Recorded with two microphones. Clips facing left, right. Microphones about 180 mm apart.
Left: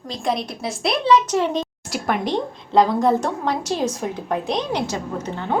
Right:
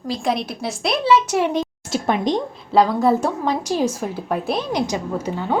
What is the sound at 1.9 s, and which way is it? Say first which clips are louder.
Speech: right 3 dB; 25° right (ahead or behind).